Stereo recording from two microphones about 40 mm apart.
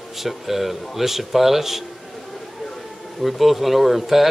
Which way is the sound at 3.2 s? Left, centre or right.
Centre.